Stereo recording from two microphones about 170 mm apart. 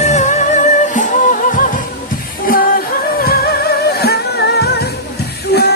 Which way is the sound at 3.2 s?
70° left (ahead or behind).